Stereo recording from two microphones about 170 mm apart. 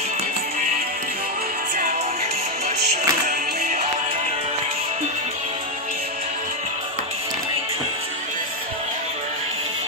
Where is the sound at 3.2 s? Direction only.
65° right (ahead or behind).